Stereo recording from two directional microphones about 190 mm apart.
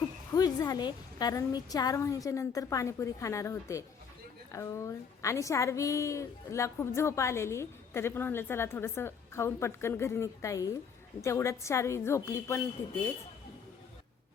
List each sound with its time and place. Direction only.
0.3 s a woman's voice: 20° left (ahead or behind)